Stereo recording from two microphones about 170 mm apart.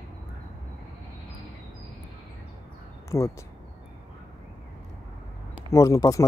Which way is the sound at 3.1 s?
15° left (ahead or behind).